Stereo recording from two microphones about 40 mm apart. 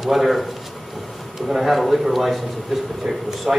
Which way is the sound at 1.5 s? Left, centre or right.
Centre.